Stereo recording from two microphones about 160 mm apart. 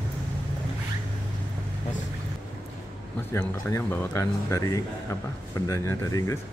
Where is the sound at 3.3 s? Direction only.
15° left (ahead or behind).